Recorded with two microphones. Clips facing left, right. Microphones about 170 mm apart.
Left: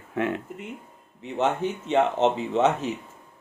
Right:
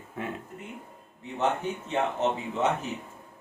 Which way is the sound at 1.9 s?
85° left.